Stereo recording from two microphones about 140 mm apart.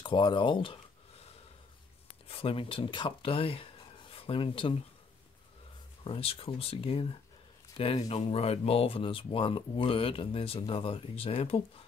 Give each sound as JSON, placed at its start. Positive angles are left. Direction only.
{"t": 0.0, "sound": "speech", "side_deg": 35}
{"t": 2.2, "sound": "speech", "side_deg": 40}
{"t": 6.0, "sound": "speech", "side_deg": 45}